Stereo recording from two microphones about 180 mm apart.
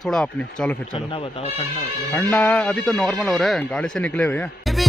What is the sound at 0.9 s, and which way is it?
Speech, 30° left (ahead or behind).